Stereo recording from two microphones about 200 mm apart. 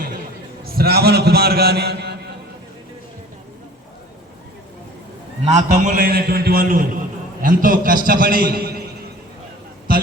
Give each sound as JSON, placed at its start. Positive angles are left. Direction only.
{"t": 0.6, "sound": "a man's voice", "side_deg": -50}
{"t": 5.4, "sound": "a man's voice", "side_deg": -35}